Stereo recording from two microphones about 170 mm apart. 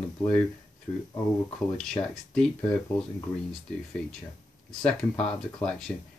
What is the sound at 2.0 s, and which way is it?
Speech, 25° left (ahead or behind).